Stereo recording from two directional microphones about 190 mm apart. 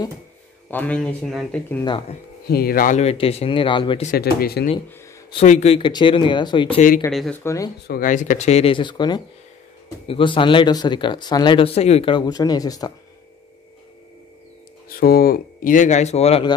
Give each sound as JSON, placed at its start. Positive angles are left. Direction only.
{"t": 0.7, "sound": "speech", "side_deg": 10}
{"t": 2.4, "sound": "speech", "side_deg": 55}
{"t": 3.0, "sound": "speech", "side_deg": 30}
{"t": 4.0, "sound": "speech", "side_deg": 50}
{"t": 5.3, "sound": "speech", "side_deg": 35}
{"t": 7.1, "sound": "speech", "side_deg": 0}
{"t": 7.4, "sound": "speech", "side_deg": 15}
{"t": 7.8, "sound": "speech", "side_deg": 50}
{"t": 14.9, "sound": "speech", "side_deg": 50}